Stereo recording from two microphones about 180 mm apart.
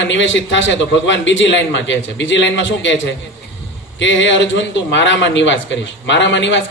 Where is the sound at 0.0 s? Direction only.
85° left.